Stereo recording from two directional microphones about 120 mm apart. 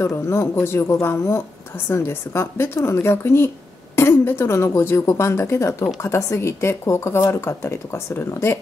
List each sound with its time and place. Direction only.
0.0 s speech: 25° left (ahead or behind)